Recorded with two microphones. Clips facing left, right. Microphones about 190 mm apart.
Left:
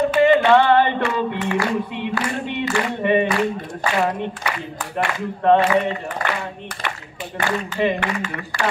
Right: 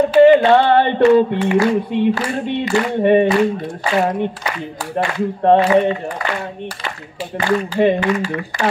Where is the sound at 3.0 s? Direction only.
45° right (ahead or behind).